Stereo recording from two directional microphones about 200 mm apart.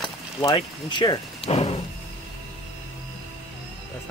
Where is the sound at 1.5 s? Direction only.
30° left (ahead or behind).